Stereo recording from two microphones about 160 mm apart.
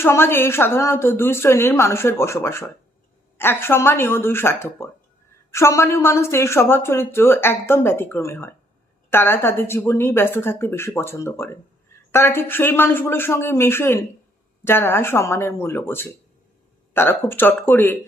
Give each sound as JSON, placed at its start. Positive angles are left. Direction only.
{"t": 0.0, "sound": "a woman's voice", "side_deg": 15}